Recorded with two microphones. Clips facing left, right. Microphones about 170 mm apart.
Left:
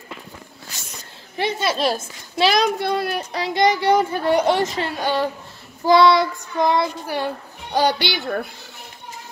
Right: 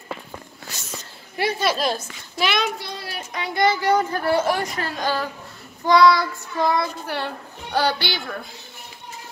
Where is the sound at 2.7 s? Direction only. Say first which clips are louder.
Left 12 dB; 55° left (ahead or behind).